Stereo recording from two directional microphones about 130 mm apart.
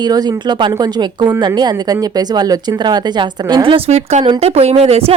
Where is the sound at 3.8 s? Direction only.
55° right (ahead or behind).